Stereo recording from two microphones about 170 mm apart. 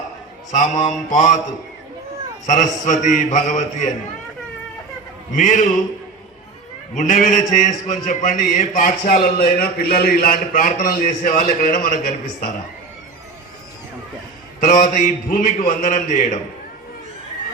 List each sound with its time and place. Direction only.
1.1 s speech: 45° left (ahead or behind)
2.5 s speech: 45° left (ahead or behind)
5.3 s speech: 50° left (ahead or behind)
6.9 s speech: 50° left (ahead or behind)
14.6 s speech: 45° left (ahead or behind)